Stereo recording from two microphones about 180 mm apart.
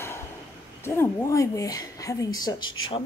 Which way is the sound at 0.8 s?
15° left (ahead or behind).